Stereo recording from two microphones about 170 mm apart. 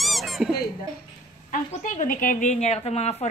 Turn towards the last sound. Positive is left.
turn(degrees=40)  # may be behind; listen again after turning